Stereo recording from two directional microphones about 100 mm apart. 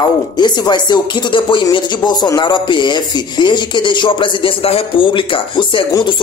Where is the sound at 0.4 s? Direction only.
45° left (ahead or behind).